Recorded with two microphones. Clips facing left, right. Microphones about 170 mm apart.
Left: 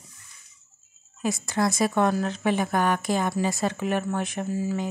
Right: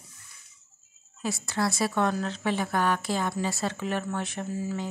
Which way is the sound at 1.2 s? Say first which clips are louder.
Left 4 dB; 15° left (ahead or behind).